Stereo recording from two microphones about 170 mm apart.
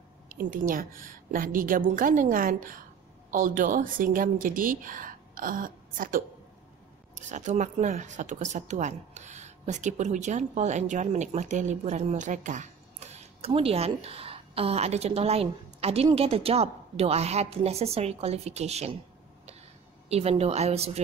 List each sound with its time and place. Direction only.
0.3 s a woman's voice: 55° right (ahead or behind)
20.1 s speech: 35° right (ahead or behind)